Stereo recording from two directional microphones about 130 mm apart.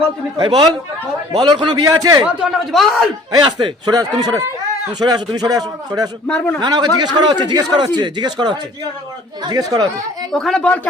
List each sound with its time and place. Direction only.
0.3 s a man's voice: 35° right (ahead or behind)
2.2 s speech: 5° right (ahead or behind)
3.3 s speech: 35° right (ahead or behind)
6.2 s speech: 10° left (ahead or behind)
6.6 s a man's voice: 30° right (ahead or behind)
10.3 s a woman's voice: 5° left (ahead or behind)